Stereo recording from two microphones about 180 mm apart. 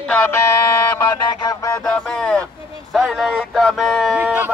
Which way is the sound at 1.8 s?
5° left (ahead or behind).